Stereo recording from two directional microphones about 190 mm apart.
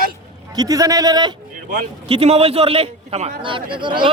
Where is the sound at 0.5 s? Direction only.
20° right (ahead or behind).